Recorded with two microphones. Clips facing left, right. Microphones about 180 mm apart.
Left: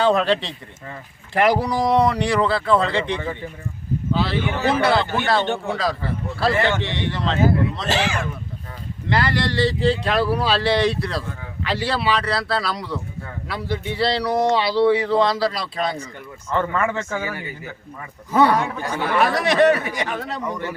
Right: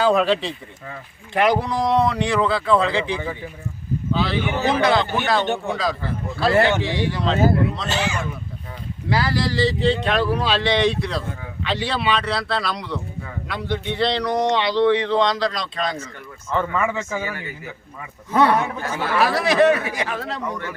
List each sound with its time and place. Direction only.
0.0 s speech: centre (ahead or behind)
4.4 s speech: 10° right (ahead or behind)
4.7 s speech: 5° left (ahead or behind)
9.0 s speech: 5° right (ahead or behind)
18.3 s speech: centre (ahead or behind)